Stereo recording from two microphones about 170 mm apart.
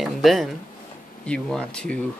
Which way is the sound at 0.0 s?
Centre (ahead or behind).